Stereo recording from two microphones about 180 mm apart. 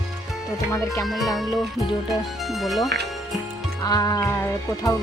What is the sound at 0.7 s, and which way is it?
Speech, 15° left (ahead or behind).